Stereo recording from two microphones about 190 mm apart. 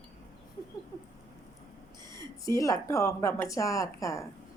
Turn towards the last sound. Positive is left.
turn(degrees=15)  # may be behind; listen again after turning